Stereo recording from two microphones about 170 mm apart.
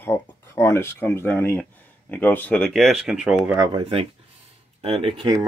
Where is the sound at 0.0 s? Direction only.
15° left (ahead or behind); by 3.6 s 5° right (ahead or behind).